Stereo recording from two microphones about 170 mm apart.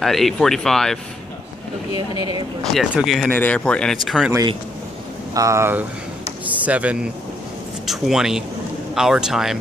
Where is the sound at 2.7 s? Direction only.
Centre (ahead or behind).